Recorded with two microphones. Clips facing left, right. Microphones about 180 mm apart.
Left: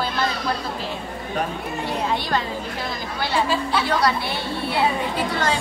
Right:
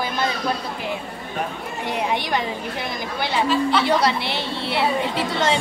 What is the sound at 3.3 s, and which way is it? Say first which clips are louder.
A woman's voice: right 2 dB; 20° right (ahead or behind).